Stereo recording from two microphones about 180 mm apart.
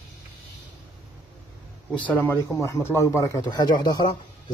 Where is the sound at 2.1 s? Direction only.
10° left (ahead or behind).